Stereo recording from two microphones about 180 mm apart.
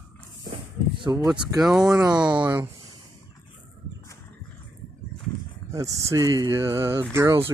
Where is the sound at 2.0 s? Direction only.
20° right (ahead or behind).